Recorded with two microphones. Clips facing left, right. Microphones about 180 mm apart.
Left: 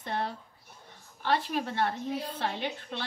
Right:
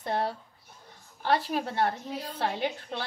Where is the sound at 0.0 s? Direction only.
40° right (ahead or behind).